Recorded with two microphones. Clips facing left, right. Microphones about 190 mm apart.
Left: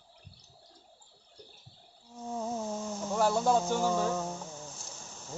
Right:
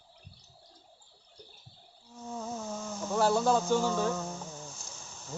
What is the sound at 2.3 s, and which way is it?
Insect, 15° left (ahead or behind).